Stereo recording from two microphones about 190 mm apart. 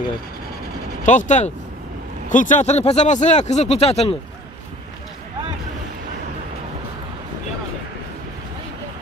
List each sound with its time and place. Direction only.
1.0 s speech: 40° left (ahead or behind)